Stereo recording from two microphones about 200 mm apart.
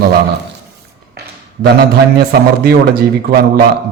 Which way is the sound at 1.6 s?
50° right (ahead or behind).